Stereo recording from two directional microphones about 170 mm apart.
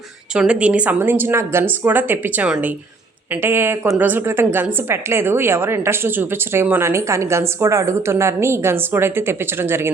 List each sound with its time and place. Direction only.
0.3 s a woman's voice: 5° right (ahead or behind)